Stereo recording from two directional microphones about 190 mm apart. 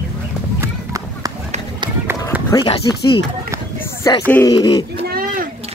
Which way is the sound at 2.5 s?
25° left (ahead or behind).